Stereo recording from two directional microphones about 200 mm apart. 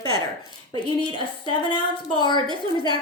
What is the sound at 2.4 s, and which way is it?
Speech, 25° right (ahead or behind).